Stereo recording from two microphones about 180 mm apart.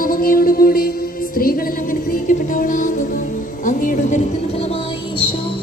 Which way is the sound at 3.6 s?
50° left (ahead or behind).